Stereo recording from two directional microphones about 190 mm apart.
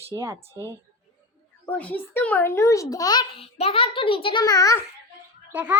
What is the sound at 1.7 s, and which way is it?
A child's voice, 5° left (ahead or behind).